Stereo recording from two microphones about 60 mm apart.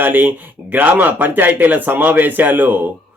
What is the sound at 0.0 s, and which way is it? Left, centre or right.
Speech, right.